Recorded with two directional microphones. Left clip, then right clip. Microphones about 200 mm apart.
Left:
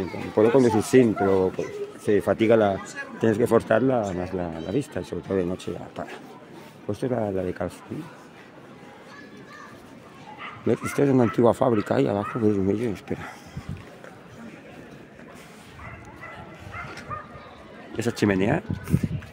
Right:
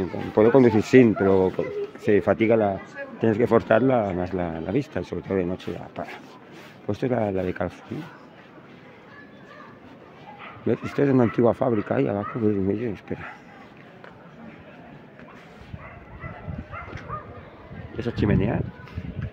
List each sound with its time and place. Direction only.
0.3 s speech: 20° right (ahead or behind)
2.3 s speech: centre (ahead or behind); by 8.0 s 15° right (ahead or behind)
10.7 s speech: centre (ahead or behind)
17.9 s speech: 20° left (ahead or behind)